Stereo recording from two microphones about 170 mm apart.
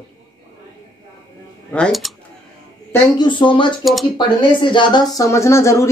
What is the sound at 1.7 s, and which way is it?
Speech, 5° left (ahead or behind).